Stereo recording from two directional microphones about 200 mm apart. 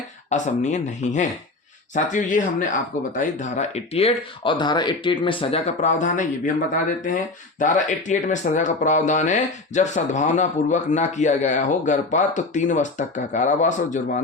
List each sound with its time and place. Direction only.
0.3 s speech: 35° left (ahead or behind)
7.6 s speech: 40° left (ahead or behind)